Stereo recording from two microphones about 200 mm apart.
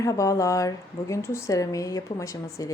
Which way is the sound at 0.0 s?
15° left (ahead or behind).